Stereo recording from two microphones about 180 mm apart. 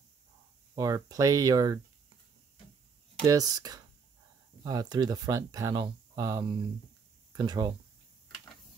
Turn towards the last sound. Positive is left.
turn(degrees=-20)  # may be behind; listen again after turning